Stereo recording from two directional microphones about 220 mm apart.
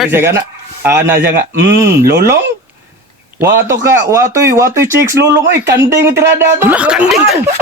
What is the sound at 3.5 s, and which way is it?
Speech, 15° right (ahead or behind).